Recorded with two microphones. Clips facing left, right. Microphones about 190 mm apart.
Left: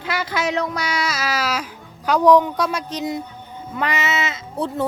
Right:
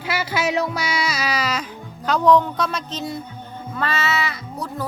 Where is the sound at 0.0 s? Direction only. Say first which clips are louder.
Even; 5° right (ahead or behind).